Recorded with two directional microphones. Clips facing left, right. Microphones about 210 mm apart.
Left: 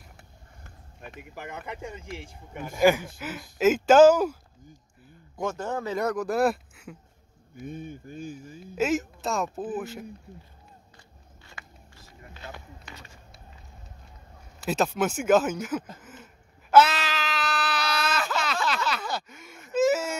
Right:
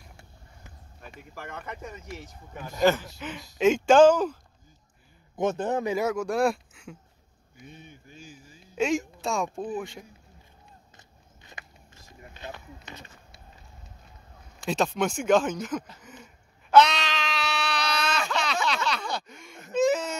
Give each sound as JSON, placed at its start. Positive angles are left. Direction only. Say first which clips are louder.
{"t": 1.3, "sound": "speech", "louder": "left 1 dB", "side_deg": 15}
{"t": 5.3, "sound": "a man's voice", "louder": "right 4 dB", "side_deg": -20}
{"t": 5.9, "sound": "speech", "louder": "even", "side_deg": 0}
{"t": 7.5, "sound": "speech", "louder": "left 10 dB", "side_deg": 50}
{"t": 8.7, "sound": "speech", "louder": "even", "side_deg": 5}
{"t": 11.4, "sound": "vehicle", "louder": "even", "side_deg": -20}
{"t": 14.6, "sound": "speech", "louder": "left 1 dB", "side_deg": 5}
{"t": 16.0, "sound": "a sound", "louder": "even", "side_deg": 0}
{"t": 16.7, "sound": "baby cry", "louder": "even", "side_deg": 5}
{"t": 18.9, "sound": "a sound", "louder": "even", "side_deg": 5}